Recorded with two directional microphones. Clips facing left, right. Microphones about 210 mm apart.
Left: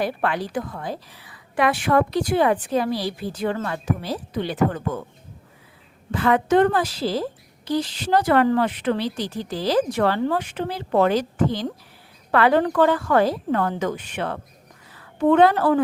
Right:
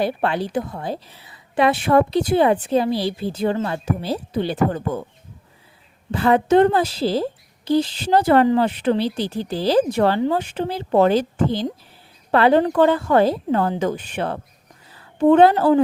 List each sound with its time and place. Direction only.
0.0 s a woman's voice: 25° right (ahead or behind)
6.1 s a woman's voice: 30° right (ahead or behind)